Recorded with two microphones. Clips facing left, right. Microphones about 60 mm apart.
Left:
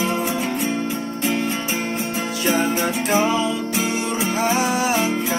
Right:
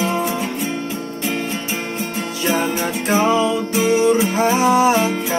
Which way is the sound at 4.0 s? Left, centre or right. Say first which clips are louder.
Right 6 dB; right.